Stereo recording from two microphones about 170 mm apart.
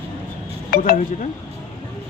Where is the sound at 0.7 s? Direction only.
55° left (ahead or behind).